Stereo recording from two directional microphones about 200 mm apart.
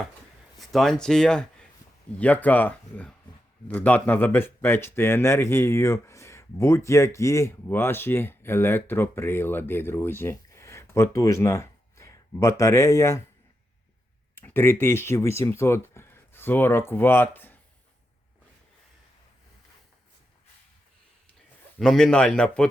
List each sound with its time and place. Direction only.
0.6 s speech: centre (ahead or behind)
14.3 s speech: 10° left (ahead or behind)
21.8 s a man's voice: 5° left (ahead or behind)